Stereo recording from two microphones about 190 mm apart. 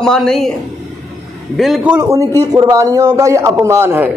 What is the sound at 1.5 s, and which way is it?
A man's voice, centre (ahead or behind).